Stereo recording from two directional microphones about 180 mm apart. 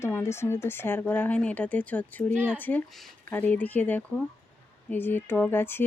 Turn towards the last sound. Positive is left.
turn(degrees=10)  # may be behind; listen again after turning